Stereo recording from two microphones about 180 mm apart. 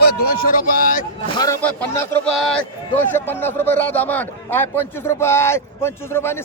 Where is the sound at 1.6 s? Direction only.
10° left (ahead or behind).